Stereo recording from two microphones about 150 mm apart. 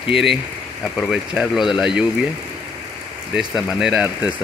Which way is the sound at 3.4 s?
5° right (ahead or behind).